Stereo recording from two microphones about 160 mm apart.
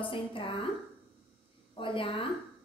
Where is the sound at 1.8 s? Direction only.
35° left (ahead or behind).